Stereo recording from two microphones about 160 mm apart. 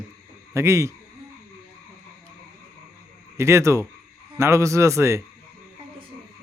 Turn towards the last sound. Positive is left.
turn(degrees=-15)  # may be behind; listen again after turning